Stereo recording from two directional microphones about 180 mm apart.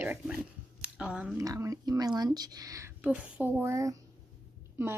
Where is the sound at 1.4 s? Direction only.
20° right (ahead or behind).